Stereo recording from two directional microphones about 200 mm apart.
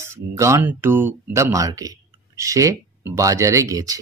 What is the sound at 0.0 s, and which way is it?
Speech, 15° right (ahead or behind).